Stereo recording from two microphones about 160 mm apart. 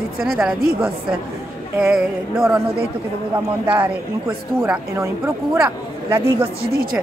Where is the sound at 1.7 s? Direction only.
5° right (ahead or behind).